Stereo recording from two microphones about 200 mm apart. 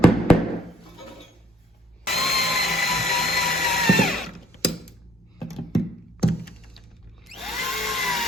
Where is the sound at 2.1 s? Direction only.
Centre (ahead or behind).